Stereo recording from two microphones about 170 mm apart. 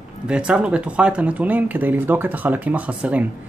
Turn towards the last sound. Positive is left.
turn(degrees=-10)  # may be behind; listen again after turning